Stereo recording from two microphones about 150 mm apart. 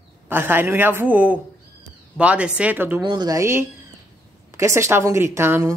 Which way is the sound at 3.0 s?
30° right (ahead or behind).